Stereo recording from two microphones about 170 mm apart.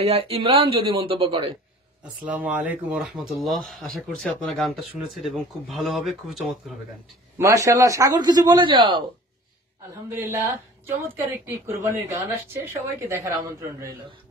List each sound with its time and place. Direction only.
0.0 s speech: 35° right (ahead or behind)
2.2 s speech: 10° right (ahead or behind)
7.3 s a man's voice: 20° right (ahead or behind)
10.0 s speech: 15° right (ahead or behind)